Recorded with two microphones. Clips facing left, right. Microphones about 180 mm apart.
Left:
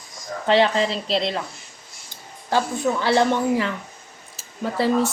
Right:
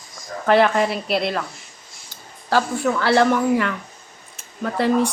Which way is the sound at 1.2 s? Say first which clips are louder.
Right 2 dB; 20° left (ahead or behind).